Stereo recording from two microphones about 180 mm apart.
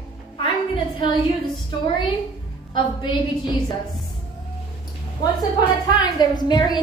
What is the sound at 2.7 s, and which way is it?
Speech, 25° left (ahead or behind).